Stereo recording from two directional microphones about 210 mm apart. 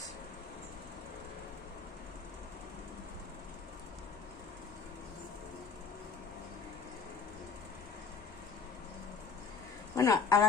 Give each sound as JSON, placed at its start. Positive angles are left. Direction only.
{"t": 9.9, "sound": "a woman's voice", "side_deg": 15}